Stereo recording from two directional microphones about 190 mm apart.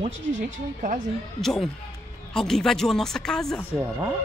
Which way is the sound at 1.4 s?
Centre (ahead or behind).